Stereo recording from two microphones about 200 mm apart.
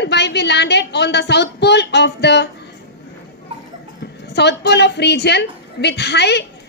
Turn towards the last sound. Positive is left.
turn(degrees=55)  # may be behind; listen again after turning